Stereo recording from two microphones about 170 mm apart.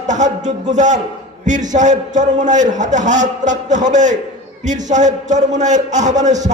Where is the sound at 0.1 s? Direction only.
45° right (ahead or behind).